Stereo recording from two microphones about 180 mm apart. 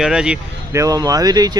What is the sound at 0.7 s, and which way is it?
Speech, 20° right (ahead or behind).